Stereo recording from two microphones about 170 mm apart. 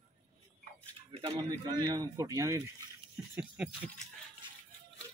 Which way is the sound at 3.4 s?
5° right (ahead or behind).